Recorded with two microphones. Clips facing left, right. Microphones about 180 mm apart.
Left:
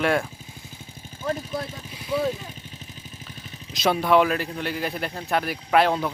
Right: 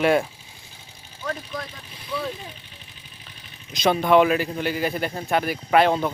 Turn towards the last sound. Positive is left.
turn(degrees=0)  # may be behind; listen again after turning